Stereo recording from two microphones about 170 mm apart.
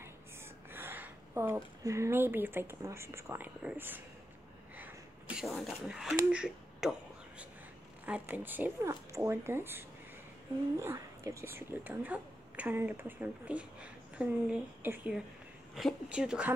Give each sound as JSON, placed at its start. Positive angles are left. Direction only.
{"t": 0.7, "sound": "speech", "side_deg": -10}
{"t": 4.7, "sound": "sneeze", "side_deg": -10}
{"t": 5.5, "sound": "a woman's voice", "side_deg": 0}
{"t": 6.3, "sound": "a sound", "side_deg": -5}
{"t": 8.0, "sound": "a woman's voice", "side_deg": -10}